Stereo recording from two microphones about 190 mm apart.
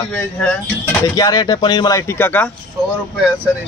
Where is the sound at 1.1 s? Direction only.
20° left (ahead or behind).